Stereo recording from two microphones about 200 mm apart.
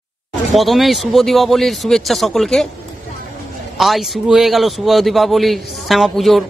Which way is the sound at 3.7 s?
Centre (ahead or behind).